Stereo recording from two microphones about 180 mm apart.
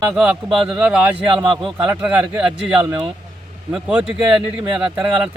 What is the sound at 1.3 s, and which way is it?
Speech, 30° right (ahead or behind).